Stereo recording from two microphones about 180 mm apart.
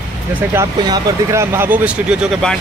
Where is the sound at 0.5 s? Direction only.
20° right (ahead or behind).